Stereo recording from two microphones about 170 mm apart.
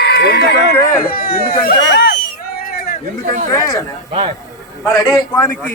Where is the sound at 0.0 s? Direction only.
70° left (ahead or behind).